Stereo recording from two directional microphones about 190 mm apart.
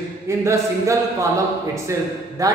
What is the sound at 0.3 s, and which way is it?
A man's voice, 15° right (ahead or behind).